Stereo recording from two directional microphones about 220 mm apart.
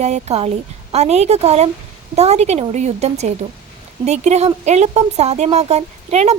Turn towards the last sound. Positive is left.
turn(degrees=-30)  # may be behind; listen again after turning